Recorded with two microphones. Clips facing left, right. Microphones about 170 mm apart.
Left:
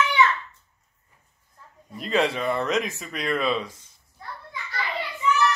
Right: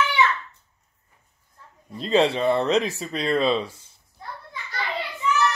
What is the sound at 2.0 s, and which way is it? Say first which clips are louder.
Speech: right 4 dB; 30° right (ahead or behind).